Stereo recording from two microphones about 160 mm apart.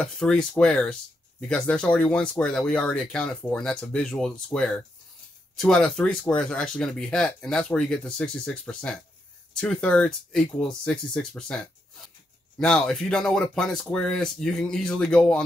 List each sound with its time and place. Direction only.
0.0 s speech: 5° left (ahead or behind)